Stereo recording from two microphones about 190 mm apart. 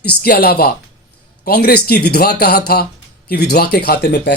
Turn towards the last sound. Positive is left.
turn(degrees=60)  # may be behind; listen again after turning